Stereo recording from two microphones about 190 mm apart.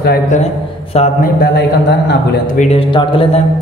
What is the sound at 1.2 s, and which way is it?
Speech, 55° left (ahead or behind).